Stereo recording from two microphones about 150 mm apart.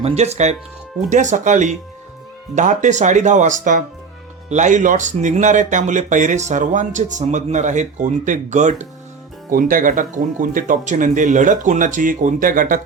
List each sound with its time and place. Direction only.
0.0 s speech: 45° right (ahead or behind)
9.5 s speech: 70° right (ahead or behind)